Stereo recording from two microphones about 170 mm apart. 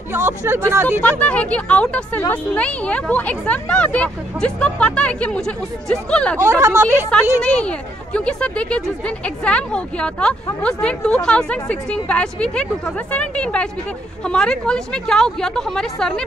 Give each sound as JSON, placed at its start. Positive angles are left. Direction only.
{"t": 0.1, "sound": "speech", "side_deg": -15}
{"t": 1.2, "sound": "a woman's voice", "side_deg": 10}
{"t": 6.4, "sound": "speech", "side_deg": -15}
{"t": 7.1, "sound": "a woman's voice", "side_deg": 5}